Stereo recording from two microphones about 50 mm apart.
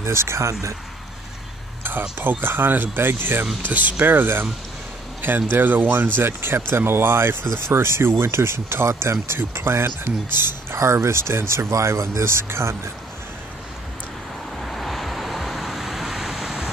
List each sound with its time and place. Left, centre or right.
0.0 s speech: right
1.8 s speech: right
3.6 s speech: right
10.8 s speech: right
14.6 s vehicle: centre